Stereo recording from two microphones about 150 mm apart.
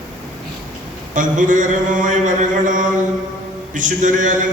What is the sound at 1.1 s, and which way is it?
Mantra, 60° right (ahead or behind).